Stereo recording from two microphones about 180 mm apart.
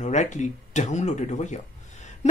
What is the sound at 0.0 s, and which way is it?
Speech, 40° left (ahead or behind).